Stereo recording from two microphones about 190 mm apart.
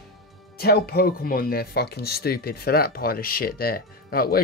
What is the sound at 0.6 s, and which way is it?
Speech, 55° left (ahead or behind).